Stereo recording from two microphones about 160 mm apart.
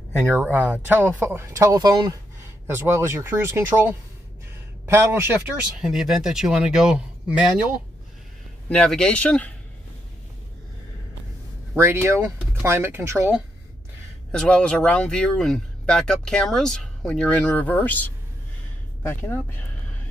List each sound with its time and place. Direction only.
0.2 s speech: 10° right (ahead or behind)
8.6 s speech: 5° left (ahead or behind)
11.7 s speech: 15° right (ahead or behind)
14.3 s speech: 5° left (ahead or behind)